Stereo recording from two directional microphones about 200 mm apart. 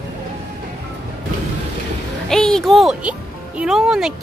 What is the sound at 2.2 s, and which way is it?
Speech, 5° left (ahead or behind).